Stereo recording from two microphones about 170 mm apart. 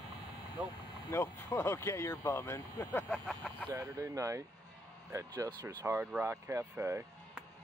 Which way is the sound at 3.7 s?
20° right (ahead or behind).